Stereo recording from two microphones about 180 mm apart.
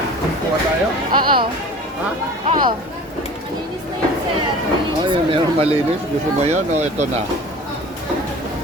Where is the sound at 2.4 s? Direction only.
45° right (ahead or behind).